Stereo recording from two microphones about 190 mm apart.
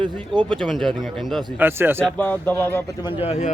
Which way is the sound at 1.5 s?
10° right (ahead or behind).